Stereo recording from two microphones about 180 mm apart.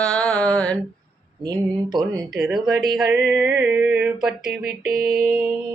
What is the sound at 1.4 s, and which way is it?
Speech, 25° right (ahead or behind).